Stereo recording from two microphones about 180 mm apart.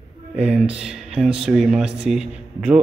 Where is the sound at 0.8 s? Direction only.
5° right (ahead or behind).